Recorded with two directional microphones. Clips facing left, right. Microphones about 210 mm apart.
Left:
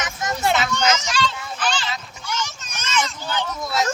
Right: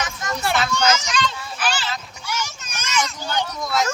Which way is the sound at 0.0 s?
20° left (ahead or behind).